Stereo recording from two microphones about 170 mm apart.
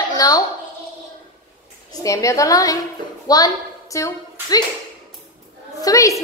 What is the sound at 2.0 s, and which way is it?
A child's voice, 20° left (ahead or behind).